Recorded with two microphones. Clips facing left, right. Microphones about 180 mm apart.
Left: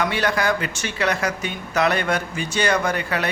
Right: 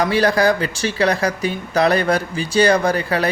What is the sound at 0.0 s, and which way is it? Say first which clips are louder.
A man's voice: right 6 dB; 35° right (ahead or behind).